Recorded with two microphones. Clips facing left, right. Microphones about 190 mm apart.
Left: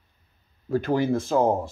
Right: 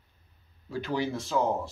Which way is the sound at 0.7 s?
50° left (ahead or behind).